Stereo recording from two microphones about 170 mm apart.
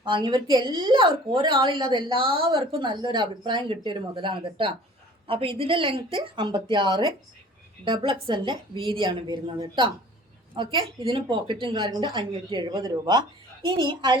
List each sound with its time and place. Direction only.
0.0 s a woman's voice: 30° right (ahead or behind)